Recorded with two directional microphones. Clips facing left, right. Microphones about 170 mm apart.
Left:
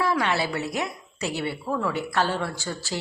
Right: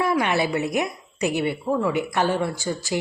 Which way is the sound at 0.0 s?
20° right (ahead or behind).